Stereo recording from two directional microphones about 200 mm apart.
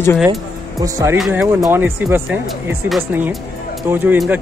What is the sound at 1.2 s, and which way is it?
Speech, 5° right (ahead or behind).